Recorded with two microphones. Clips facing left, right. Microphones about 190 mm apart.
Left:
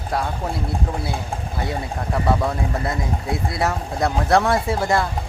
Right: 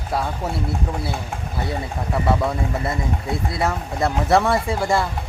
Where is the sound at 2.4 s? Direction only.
Centre (ahead or behind).